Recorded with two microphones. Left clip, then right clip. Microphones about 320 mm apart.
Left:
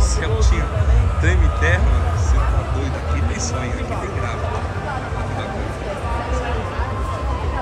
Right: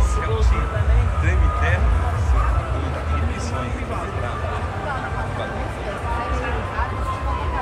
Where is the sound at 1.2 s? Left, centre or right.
Centre.